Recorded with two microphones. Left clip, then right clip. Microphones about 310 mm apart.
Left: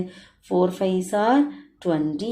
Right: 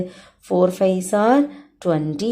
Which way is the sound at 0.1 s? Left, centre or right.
Right.